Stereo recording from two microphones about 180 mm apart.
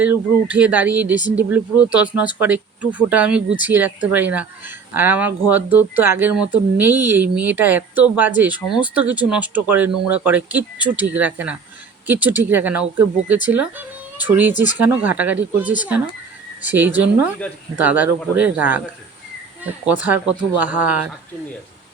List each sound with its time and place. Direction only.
0.0 s speech: 10° right (ahead or behind)